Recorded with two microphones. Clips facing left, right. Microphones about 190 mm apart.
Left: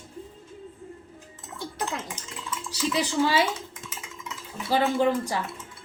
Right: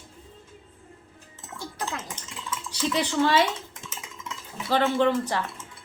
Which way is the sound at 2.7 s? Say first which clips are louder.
Even; 10° left (ahead or behind).